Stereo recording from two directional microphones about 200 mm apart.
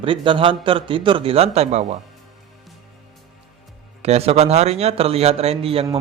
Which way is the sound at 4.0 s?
30° right (ahead or behind).